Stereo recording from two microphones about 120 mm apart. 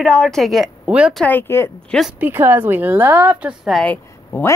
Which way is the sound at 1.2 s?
15° left (ahead or behind).